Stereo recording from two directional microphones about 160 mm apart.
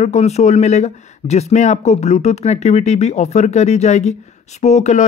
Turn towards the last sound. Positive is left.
turn(degrees=45)  # may be behind; listen again after turning